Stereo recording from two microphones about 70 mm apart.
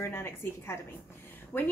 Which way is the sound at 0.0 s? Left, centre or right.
Left.